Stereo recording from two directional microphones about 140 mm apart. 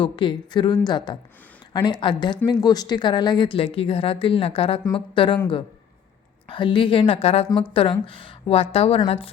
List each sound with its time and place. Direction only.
0.0 s a woman's voice: 35° left (ahead or behind)
6.5 s a woman's voice: 35° left (ahead or behind)